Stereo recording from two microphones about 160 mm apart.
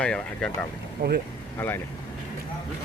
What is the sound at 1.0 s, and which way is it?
Speech, 65° right (ahead or behind).